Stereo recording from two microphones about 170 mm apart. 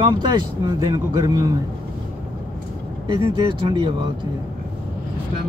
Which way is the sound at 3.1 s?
30° right (ahead or behind).